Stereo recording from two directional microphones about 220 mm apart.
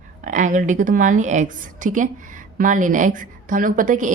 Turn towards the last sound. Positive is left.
turn(degrees=-35)  # may be behind; listen again after turning